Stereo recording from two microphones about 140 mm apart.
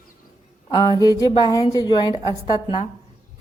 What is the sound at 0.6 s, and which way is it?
A woman's voice, 30° left (ahead or behind).